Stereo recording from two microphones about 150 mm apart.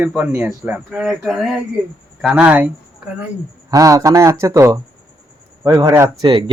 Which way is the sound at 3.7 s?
20° right (ahead or behind).